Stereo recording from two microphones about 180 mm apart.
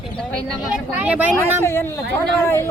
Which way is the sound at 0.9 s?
5° right (ahead or behind).